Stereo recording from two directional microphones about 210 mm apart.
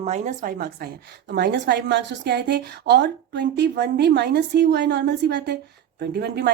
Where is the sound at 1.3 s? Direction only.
55° right (ahead or behind).